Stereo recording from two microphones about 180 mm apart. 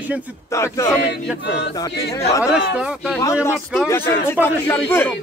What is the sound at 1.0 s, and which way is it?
Choir, 70° left (ahead or behind).